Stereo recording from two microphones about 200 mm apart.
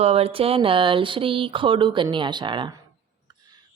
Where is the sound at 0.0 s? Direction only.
30° right (ahead or behind).